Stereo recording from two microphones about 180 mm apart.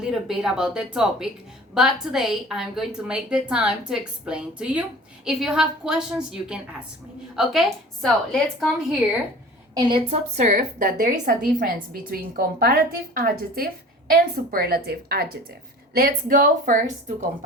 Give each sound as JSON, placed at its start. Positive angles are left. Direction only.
{"t": 0.0, "sound": "a woman's voice", "side_deg": -5}
{"t": 9.7, "sound": "a woman's voice", "side_deg": -30}